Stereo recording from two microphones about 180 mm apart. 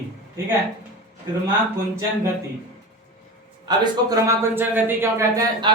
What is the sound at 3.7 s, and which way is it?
A man's voice, 20° right (ahead or behind).